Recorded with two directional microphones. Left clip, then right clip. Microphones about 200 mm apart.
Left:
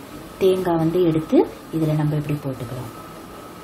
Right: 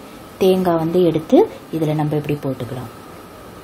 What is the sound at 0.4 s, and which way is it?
A woman's voice, 50° right (ahead or behind).